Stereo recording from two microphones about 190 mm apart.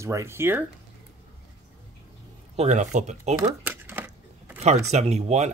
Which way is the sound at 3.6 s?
10° right (ahead or behind).